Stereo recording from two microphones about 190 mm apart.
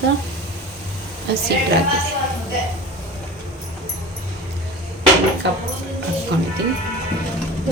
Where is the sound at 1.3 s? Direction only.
60° right (ahead or behind).